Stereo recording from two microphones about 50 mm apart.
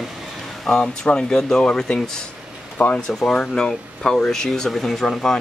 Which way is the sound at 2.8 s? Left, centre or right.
Left.